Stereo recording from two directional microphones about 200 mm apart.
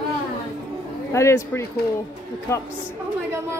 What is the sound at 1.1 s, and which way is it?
Speech, 15° left (ahead or behind).